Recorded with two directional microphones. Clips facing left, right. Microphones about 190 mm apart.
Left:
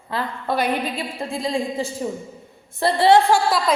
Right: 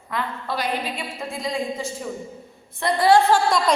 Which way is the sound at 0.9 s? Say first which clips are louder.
Left 4 dB; 30° left (ahead or behind).